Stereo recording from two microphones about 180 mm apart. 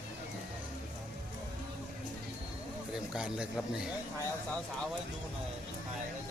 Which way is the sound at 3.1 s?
5° right (ahead or behind).